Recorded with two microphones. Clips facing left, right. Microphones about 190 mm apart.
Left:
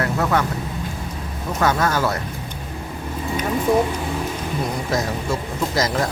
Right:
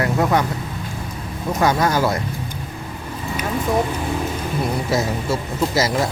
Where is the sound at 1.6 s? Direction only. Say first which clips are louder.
Right 2 dB; 10° right (ahead or behind).